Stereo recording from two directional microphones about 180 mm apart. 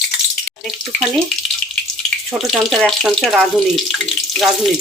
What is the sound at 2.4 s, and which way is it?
Speech, centre (ahead or behind).